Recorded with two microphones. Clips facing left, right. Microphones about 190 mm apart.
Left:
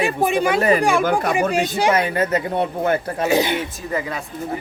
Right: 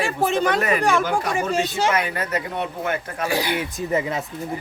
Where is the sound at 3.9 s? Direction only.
20° right (ahead or behind).